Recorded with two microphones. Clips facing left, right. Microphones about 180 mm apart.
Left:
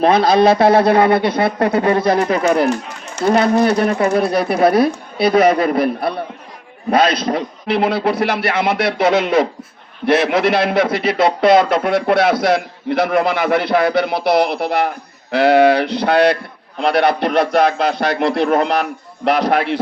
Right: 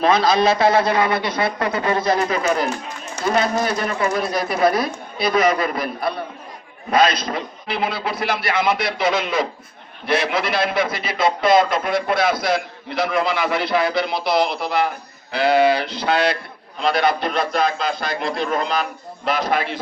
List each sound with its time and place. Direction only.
0.0 s a man's voice: 60° left (ahead or behind)
3.8 s speech: 45° left (ahead or behind)
4.2 s a man's voice: 60° left (ahead or behind)